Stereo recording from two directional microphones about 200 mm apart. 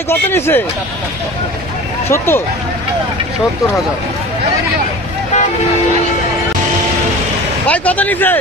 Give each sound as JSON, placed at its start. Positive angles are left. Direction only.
{"t": 0.1, "sound": "speech", "side_deg": 10}
{"t": 2.0, "sound": "speech", "side_deg": 10}
{"t": 7.6, "sound": "speech", "side_deg": 5}